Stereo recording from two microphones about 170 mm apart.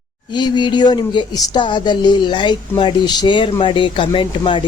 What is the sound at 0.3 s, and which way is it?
A woman's voice, 25° left (ahead or behind).